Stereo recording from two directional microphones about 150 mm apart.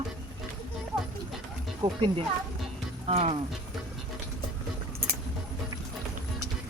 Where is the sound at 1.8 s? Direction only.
35° right (ahead or behind).